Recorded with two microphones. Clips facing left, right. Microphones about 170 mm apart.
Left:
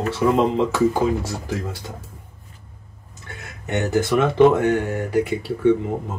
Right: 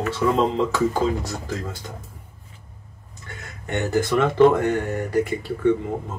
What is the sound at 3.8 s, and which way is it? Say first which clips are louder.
Speech: left 1 dB; 20° left (ahead or behind).